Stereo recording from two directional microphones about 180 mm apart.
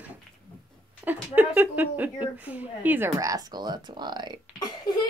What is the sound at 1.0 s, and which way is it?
A woman's voice, 10° right (ahead or behind).